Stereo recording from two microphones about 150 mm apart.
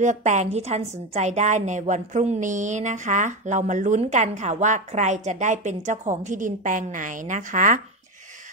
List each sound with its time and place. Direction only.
0.0 s a woman's voice: 55° right (ahead or behind)